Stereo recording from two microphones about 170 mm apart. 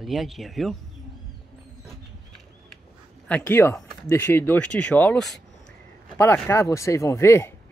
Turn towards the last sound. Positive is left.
turn(degrees=15)  # may be behind; listen again after turning